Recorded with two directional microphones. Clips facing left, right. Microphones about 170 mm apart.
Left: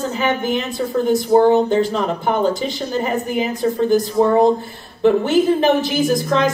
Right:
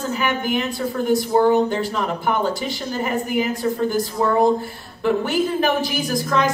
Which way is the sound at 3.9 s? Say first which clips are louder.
Left 6 dB; 20° left (ahead or behind).